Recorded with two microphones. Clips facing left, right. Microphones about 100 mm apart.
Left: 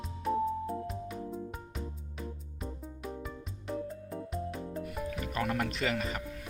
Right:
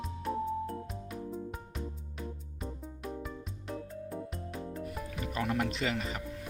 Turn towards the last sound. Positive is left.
turn(degrees=-25)  # may be behind; listen again after turning